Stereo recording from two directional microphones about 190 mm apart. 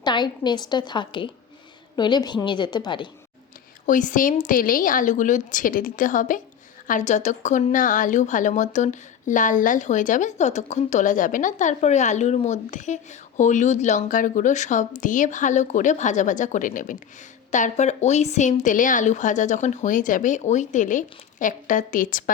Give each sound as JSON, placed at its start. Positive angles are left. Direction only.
{"t": 0.0, "sound": "a woman's voice", "side_deg": 25}
{"t": 3.8, "sound": "a woman's voice", "side_deg": 45}